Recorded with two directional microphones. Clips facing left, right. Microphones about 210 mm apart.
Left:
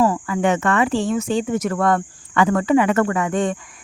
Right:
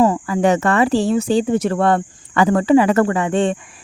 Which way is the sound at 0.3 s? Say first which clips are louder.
Right 3 dB; 35° right (ahead or behind).